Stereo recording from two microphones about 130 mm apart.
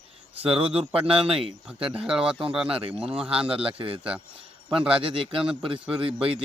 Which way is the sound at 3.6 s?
45° right (ahead or behind).